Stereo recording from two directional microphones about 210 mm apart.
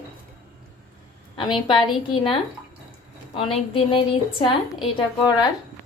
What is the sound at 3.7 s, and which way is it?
A woman's voice, 25° left (ahead or behind).